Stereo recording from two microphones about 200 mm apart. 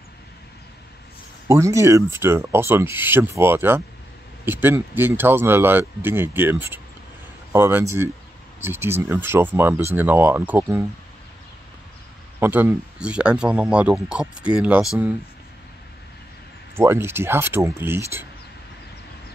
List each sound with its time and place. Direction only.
1.5 s speech: 15° right (ahead or behind)
12.4 s speech: 10° right (ahead or behind)
16.7 s speech: 10° right (ahead or behind)